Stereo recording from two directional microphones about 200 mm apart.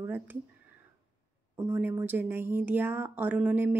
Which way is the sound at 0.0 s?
10° right (ahead or behind).